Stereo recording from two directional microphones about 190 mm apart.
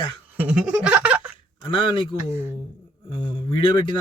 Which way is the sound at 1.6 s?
25° left (ahead or behind).